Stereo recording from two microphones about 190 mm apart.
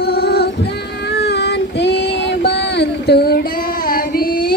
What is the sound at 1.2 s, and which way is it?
Child singing, 60° left (ahead or behind).